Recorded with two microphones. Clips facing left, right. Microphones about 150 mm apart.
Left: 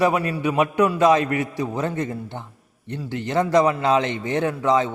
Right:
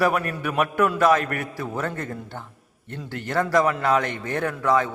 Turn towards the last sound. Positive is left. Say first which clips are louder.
# left 2 dB
turn(degrees=20)  # may be behind; listen again after turning